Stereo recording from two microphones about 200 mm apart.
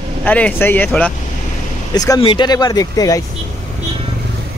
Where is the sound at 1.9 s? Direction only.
20° left (ahead or behind).